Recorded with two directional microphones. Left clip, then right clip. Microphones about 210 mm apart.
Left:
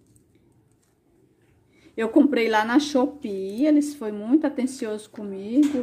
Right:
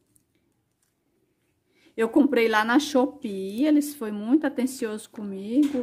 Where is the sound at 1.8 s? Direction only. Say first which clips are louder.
Left 2 dB; 20° right (ahead or behind).